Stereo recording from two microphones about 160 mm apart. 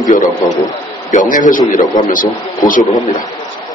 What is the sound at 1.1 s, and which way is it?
A man's voice, 55° left (ahead or behind).